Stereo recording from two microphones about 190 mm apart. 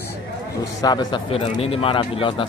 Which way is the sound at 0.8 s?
20° left (ahead or behind).